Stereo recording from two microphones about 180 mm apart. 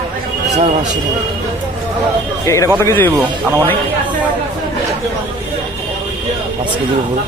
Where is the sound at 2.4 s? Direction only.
15° left (ahead or behind).